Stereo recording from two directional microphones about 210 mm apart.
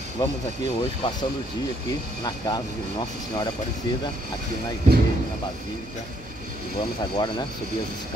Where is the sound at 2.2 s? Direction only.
20° left (ahead or behind).